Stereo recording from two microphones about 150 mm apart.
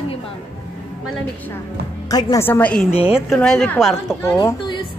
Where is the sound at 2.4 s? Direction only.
10° left (ahead or behind).